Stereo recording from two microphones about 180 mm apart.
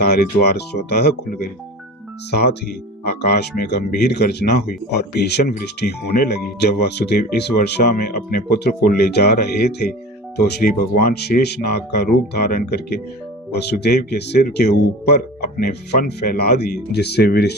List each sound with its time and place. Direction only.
0.0 s speech: 60° left (ahead or behind)